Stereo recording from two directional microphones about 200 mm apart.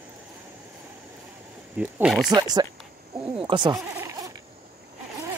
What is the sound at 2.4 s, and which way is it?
Speech, 20° right (ahead or behind).